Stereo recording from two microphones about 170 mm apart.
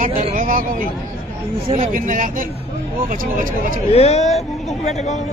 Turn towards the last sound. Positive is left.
turn(degrees=40)  # may be behind; listen again after turning